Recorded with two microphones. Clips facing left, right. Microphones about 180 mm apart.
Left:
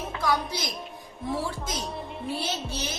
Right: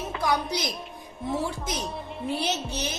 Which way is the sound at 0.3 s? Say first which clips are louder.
Right 1 dB; 20° right (ahead or behind).